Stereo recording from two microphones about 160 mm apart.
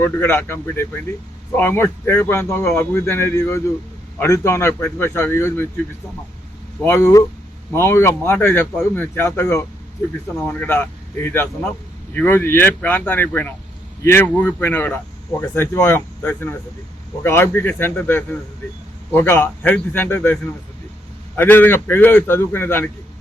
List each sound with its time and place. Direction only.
0.0 s speech: 15° left (ahead or behind)
6.8 s speech: 15° left (ahead or behind)